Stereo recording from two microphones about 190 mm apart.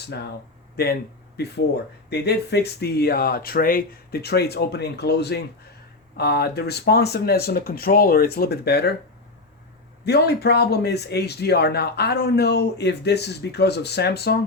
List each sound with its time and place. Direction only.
0.0 s speech: 60° left (ahead or behind)
2.0 s speech: 60° left (ahead or behind)
10.1 s speech: 60° left (ahead or behind)